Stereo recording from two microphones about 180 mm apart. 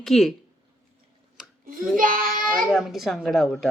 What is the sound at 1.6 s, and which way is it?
Child singing, 50° right (ahead or behind).